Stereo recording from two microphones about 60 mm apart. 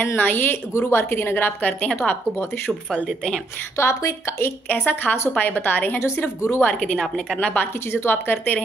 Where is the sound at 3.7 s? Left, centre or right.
Left.